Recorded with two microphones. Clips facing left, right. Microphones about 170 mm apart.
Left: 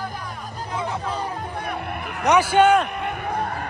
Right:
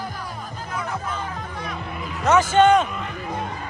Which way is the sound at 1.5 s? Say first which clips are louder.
Left 3 dB; 60° left (ahead or behind).